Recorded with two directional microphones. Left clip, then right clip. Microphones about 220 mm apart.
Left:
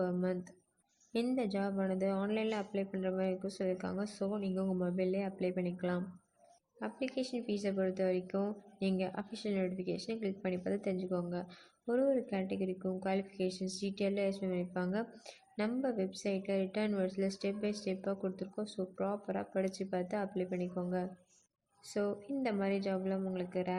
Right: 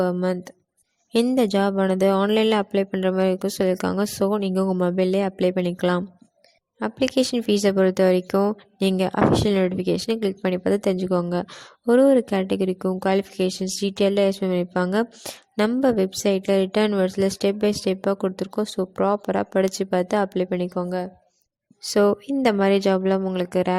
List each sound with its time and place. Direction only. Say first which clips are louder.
0.0 s speech: right 13 dB; 40° right (ahead or behind)